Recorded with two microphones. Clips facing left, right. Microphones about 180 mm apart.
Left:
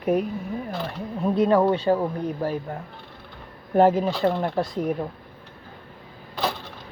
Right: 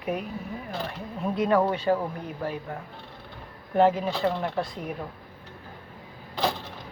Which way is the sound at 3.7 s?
40° left (ahead or behind).